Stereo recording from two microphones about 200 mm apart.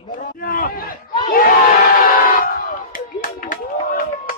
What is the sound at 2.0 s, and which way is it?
Crowd, 45° left (ahead or behind).